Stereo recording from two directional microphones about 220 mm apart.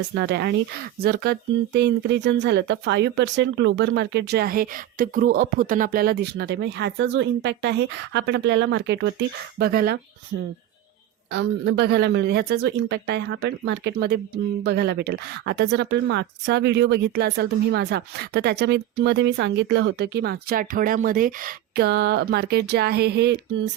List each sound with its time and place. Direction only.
0.1 s speech: 50° right (ahead or behind)
9.6 s speech: 45° right (ahead or behind)
11.3 s speech: 55° right (ahead or behind)